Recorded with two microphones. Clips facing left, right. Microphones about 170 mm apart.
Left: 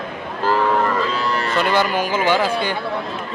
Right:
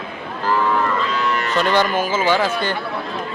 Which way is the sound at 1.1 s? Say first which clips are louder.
Even; 35° left (ahead or behind).